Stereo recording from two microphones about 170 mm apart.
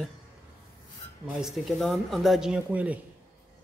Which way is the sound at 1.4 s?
Centre (ahead or behind).